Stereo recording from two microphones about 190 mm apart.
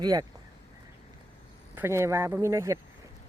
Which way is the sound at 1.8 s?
15° right (ahead or behind).